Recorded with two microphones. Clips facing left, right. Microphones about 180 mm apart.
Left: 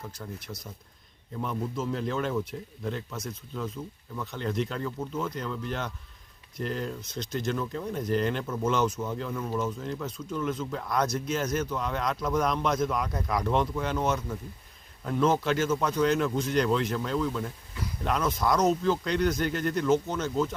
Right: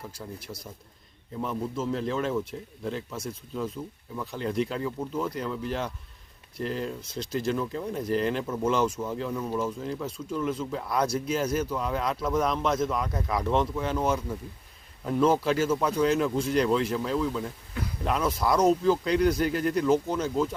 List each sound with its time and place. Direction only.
0.4 s speech: 30° right (ahead or behind)
1.4 s speech: 5° right (ahead or behind)